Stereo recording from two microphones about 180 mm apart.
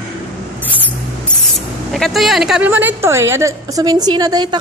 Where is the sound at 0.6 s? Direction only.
10° right (ahead or behind).